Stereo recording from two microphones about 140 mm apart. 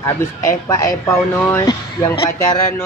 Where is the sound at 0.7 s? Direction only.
20° left (ahead or behind).